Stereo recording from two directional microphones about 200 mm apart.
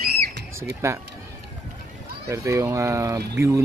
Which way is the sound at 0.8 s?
15° right (ahead or behind).